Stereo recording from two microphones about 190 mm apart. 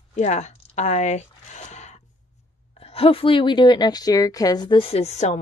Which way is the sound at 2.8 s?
30° left (ahead or behind).